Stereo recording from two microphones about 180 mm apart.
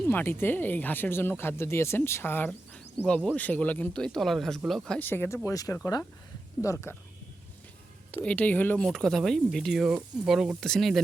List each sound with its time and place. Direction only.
0.0 s speech: 10° left (ahead or behind)
8.1 s speech: 5° left (ahead or behind)